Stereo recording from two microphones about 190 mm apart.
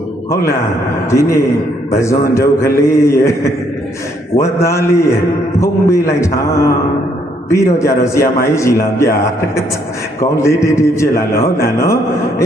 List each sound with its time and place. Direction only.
1.1 s a man's voice: 15° left (ahead or behind)